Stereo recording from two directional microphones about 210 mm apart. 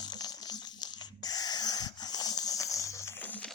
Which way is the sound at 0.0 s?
20° left (ahead or behind).